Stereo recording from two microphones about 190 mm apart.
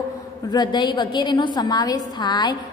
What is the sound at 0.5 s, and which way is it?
A woman's voice, 20° left (ahead or behind).